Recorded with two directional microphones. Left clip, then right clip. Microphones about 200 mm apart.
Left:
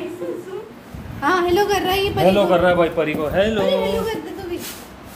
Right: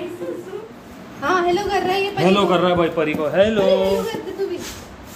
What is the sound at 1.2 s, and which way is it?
A woman's voice, 50° left (ahead or behind).